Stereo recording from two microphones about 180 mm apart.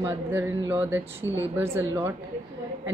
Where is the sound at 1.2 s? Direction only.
15° left (ahead or behind).